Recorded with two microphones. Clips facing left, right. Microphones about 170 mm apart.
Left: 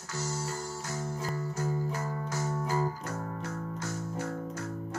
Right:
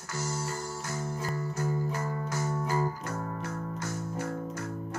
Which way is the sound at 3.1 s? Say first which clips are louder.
Right 1 dB; 55° right (ahead or behind).